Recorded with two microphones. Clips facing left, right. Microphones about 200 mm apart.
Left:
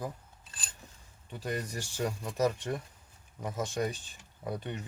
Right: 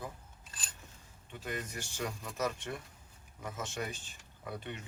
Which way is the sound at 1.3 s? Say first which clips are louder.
Left 5 dB; 35° left (ahead or behind).